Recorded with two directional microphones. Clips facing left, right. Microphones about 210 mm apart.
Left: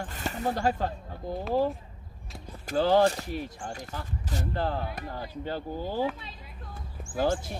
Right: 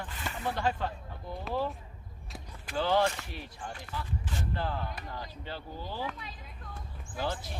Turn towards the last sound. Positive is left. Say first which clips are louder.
# left 8 dB
turn(degrees=45)  # may be behind; listen again after turning